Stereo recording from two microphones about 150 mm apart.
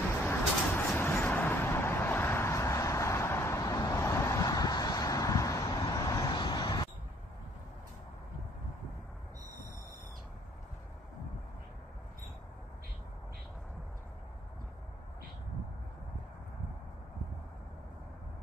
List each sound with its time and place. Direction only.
0.2 s vehicle: 15° left (ahead or behind)